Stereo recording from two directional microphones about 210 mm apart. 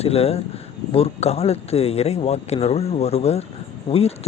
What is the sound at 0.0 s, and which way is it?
Speech, 30° left (ahead or behind).